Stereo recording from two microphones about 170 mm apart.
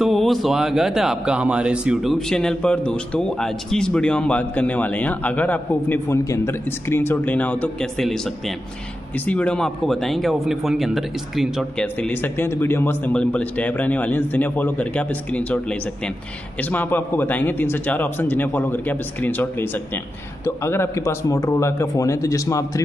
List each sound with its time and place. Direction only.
0.0 s a man's voice: centre (ahead or behind)
9.2 s a man's voice: 10° left (ahead or behind)
11.8 s a man's voice: 10° left (ahead or behind)